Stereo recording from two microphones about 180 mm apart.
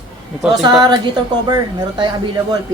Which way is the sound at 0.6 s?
25° right (ahead or behind).